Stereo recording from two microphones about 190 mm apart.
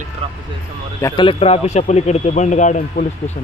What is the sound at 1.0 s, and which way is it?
A man's voice, 25° left (ahead or behind).